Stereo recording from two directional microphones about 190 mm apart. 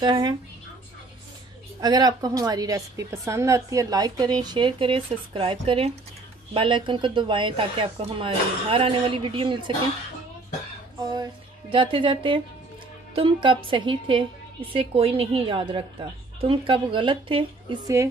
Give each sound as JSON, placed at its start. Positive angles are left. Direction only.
{"t": 0.0, "sound": "a woman's voice", "side_deg": -25}
{"t": 1.8, "sound": "a woman's voice", "side_deg": -20}
{"t": 11.0, "sound": "a woman's voice", "side_deg": -20}